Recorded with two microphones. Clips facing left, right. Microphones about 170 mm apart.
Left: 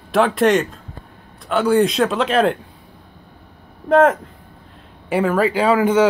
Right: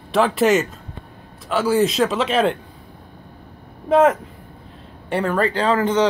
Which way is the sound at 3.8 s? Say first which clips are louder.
Left 1 dB; centre (ahead or behind).